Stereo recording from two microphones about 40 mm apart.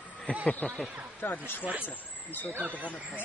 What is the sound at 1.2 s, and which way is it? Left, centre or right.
Speech, left.